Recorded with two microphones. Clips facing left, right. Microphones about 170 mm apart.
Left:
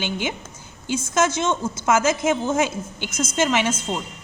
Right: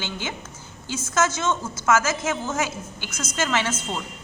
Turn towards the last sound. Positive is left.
turn(degrees=15)  # may be behind; listen again after turning